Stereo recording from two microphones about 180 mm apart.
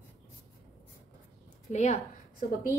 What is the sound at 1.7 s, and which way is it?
Speech, 40° left (ahead or behind).